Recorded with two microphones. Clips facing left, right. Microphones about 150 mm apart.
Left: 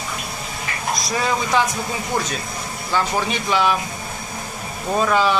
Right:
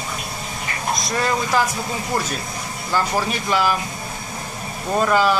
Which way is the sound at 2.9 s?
5° right (ahead or behind).